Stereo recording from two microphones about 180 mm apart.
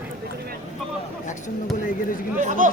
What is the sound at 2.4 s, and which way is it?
Speech, 45° right (ahead or behind).